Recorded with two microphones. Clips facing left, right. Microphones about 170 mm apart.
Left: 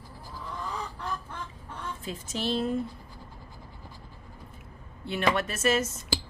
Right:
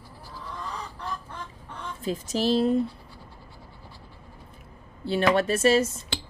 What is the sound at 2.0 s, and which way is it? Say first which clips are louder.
Speech: right 7 dB; 35° right (ahead or behind).